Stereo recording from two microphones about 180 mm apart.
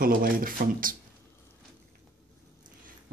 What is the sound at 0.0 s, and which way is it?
Speech, 55° right (ahead or behind).